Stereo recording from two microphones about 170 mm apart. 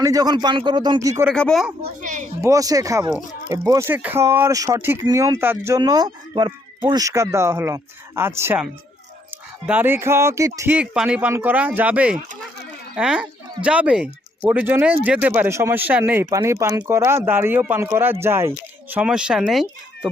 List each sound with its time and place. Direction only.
0.0 s speech: 20° right (ahead or behind)
1.3 s speech: centre (ahead or behind)
1.8 s a child's voice: 50° right (ahead or behind)
2.4 s speech: 20° right (ahead or behind); by 20.1 s centre (ahead or behind)